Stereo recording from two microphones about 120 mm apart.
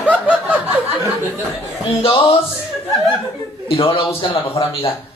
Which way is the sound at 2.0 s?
50° left (ahead or behind).